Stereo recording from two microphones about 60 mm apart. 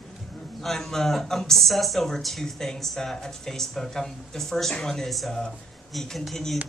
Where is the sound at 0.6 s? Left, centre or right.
Centre.